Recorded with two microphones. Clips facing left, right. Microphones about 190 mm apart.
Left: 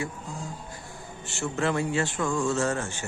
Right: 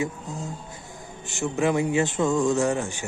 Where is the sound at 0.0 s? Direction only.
20° right (ahead or behind).